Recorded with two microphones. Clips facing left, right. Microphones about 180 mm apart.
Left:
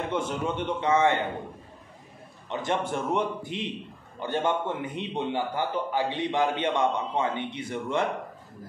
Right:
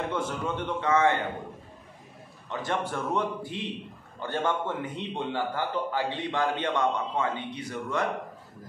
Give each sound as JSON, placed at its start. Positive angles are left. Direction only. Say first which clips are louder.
{"t": 0.1, "sound": "a man's voice", "louder": "left 2 dB", "side_deg": 20}
{"t": 2.5, "sound": "a man's voice", "louder": "left 2 dB", "side_deg": 20}